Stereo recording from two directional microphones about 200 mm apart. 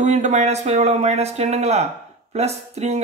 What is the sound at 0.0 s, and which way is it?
Speech, 35° right (ahead or behind).